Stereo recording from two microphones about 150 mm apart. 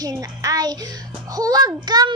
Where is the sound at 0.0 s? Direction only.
25° right (ahead or behind).